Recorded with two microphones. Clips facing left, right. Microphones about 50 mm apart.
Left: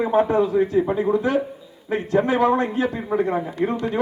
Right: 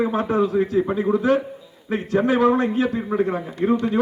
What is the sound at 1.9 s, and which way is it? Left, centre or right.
A man's voice, centre.